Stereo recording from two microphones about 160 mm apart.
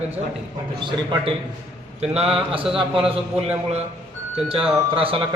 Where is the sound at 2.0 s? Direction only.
40° right (ahead or behind).